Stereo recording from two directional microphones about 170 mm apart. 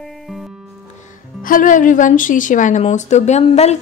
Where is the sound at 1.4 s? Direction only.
50° left (ahead or behind).